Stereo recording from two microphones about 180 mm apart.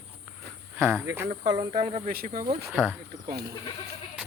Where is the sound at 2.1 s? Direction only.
50° right (ahead or behind).